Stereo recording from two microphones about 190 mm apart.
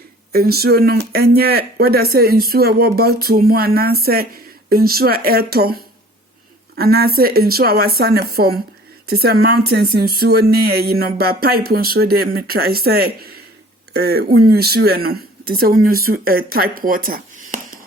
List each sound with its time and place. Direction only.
0.3 s a woman's voice: 55° right (ahead or behind)